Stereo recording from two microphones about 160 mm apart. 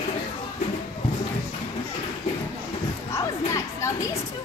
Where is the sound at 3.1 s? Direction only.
20° left (ahead or behind).